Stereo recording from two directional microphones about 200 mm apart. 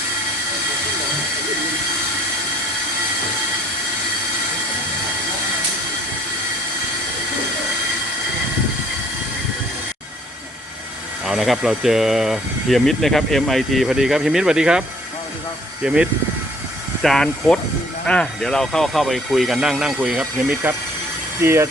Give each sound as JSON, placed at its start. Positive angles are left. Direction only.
{"t": 11.3, "sound": "speech", "side_deg": 0}
{"t": 17.0, "sound": "speech", "side_deg": 0}